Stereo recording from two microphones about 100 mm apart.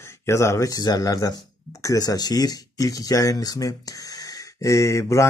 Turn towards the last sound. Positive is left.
turn(degrees=30)  # may be behind; listen again after turning